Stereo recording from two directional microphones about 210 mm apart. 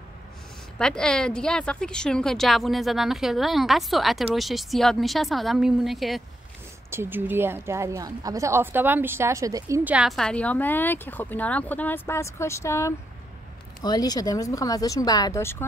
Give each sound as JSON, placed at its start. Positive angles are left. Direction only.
{"t": 0.7, "sound": "speech", "side_deg": 5}
{"t": 6.9, "sound": "a woman's voice", "side_deg": -10}